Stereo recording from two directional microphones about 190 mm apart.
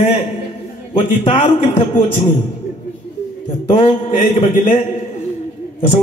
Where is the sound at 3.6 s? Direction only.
35° left (ahead or behind).